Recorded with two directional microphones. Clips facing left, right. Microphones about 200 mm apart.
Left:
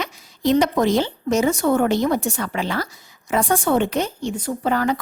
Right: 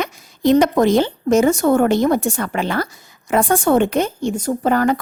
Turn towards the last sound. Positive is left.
turn(degrees=-50)  # may be behind; listen again after turning